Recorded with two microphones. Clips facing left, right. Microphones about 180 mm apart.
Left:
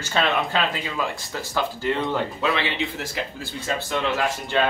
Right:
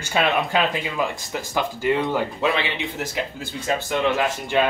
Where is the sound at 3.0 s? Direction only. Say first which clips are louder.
Right 3 dB; 15° right (ahead or behind).